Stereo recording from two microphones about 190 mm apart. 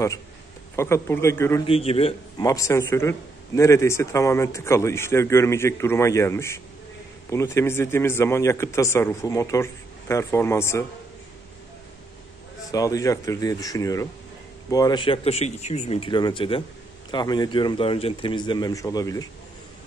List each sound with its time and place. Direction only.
0.7 s a man's voice: 15° left (ahead or behind)
1.7 s a man's voice: 30° left (ahead or behind)
2.4 s a man's voice: 15° left (ahead or behind)
12.7 s a man's voice: 20° left (ahead or behind)